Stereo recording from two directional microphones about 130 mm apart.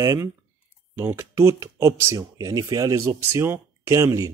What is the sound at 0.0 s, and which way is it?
Speech, 25° right (ahead or behind).